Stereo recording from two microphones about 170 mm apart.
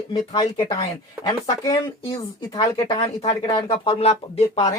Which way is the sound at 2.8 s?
35° left (ahead or behind).